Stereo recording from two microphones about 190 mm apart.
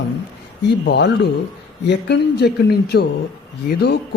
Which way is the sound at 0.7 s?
60° left (ahead or behind).